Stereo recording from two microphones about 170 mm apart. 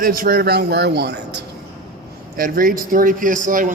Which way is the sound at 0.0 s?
55° right (ahead or behind).